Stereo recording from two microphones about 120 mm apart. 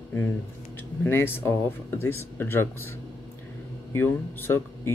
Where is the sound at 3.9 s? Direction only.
20° left (ahead or behind).